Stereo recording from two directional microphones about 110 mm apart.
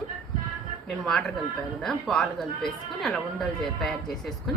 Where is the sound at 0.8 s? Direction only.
5° left (ahead or behind).